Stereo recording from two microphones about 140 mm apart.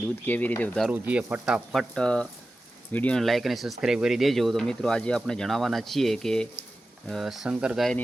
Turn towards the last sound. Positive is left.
turn(degrees=0)  # may be behind; listen again after turning